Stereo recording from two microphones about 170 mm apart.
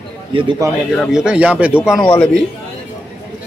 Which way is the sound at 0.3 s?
30° right (ahead or behind).